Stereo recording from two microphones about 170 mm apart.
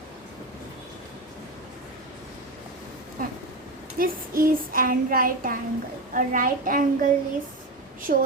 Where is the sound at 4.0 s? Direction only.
55° right (ahead or behind).